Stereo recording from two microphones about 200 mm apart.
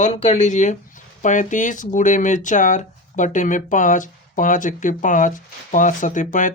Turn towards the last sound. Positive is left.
turn(degrees=40)  # may be behind; listen again after turning